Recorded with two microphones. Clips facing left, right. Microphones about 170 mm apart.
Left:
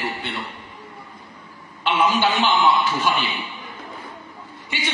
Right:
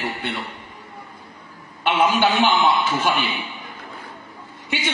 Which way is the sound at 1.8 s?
55° right (ahead or behind).